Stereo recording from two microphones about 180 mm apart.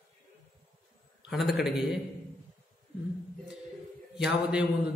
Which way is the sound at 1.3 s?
Centre (ahead or behind).